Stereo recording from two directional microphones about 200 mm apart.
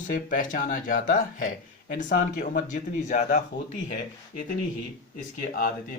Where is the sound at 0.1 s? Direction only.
40° left (ahead or behind).